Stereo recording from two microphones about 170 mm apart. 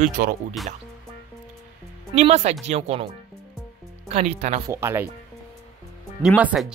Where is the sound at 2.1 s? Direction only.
40° right (ahead or behind).